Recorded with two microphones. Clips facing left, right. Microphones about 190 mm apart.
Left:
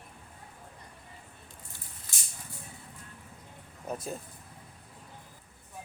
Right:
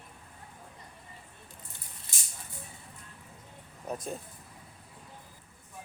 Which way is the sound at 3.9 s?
Centre (ahead or behind).